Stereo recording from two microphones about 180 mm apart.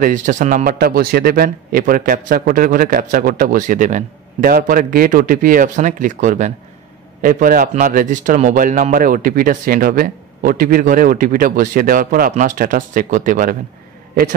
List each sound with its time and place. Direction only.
0.0 s speech: 45° right (ahead or behind)